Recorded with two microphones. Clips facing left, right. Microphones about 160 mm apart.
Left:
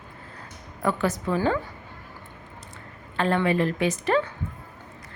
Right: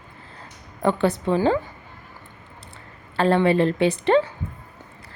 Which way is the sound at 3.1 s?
30° right (ahead or behind).